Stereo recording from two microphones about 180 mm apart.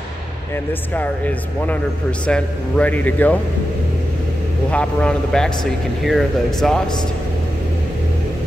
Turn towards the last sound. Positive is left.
turn(degrees=0)  # may be behind; listen again after turning